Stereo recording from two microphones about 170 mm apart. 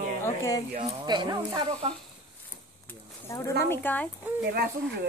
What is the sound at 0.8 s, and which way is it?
Speech, 30° right (ahead or behind).